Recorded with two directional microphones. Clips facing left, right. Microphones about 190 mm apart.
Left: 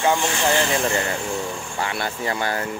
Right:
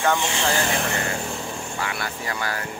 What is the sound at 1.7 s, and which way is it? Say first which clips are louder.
Speech: left 5 dB; 30° left (ahead or behind).